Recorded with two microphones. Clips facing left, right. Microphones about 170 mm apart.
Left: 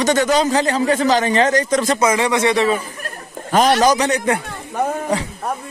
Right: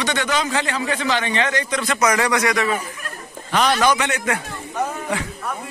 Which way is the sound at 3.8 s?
35° left (ahead or behind).